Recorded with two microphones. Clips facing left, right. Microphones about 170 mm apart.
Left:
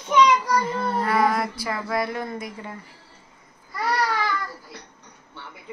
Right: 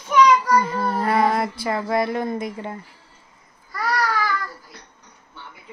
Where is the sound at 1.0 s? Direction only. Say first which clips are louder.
Right 2 dB; 25° right (ahead or behind).